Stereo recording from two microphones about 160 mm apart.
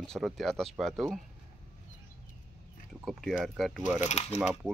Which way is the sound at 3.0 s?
Centre (ahead or behind).